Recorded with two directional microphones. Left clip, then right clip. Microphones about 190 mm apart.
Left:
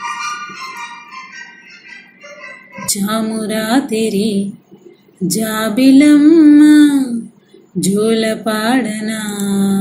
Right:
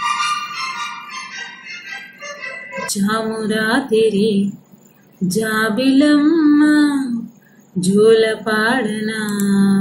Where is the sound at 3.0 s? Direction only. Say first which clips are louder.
Even; 40° left (ahead or behind).